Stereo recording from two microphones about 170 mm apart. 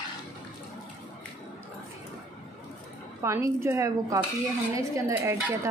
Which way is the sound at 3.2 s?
15° right (ahead or behind).